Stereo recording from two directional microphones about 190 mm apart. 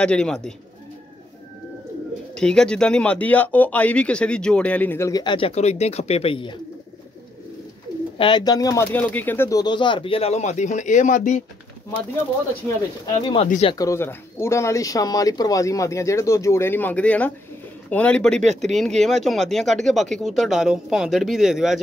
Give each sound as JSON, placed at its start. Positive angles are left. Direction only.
{"t": 0.0, "sound": "speech", "side_deg": 5}
{"t": 2.3, "sound": "speech", "side_deg": 5}
{"t": 8.2, "sound": "speech", "side_deg": 25}
{"t": 12.6, "sound": "speech", "side_deg": 10}
{"t": 13.0, "sound": "speech", "side_deg": 25}
{"t": 13.7, "sound": "speech", "side_deg": 15}